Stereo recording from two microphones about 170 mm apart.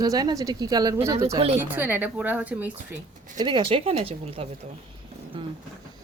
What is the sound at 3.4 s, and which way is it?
Speech, 30° right (ahead or behind).